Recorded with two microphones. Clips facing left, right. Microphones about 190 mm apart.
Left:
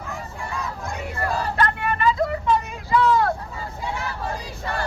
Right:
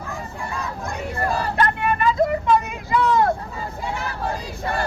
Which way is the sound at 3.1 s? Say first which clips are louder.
Right 3 dB; 20° right (ahead or behind).